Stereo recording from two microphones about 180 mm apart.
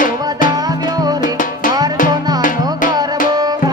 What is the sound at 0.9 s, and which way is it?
Music, 20° right (ahead or behind).